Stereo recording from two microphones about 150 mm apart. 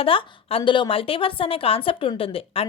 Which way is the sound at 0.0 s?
35° left (ahead or behind).